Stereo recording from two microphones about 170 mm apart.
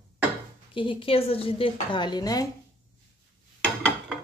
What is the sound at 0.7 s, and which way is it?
A woman's voice, 30° left (ahead or behind).